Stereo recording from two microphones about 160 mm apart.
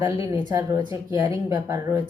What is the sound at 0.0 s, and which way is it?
A woman's voice, 20° right (ahead or behind).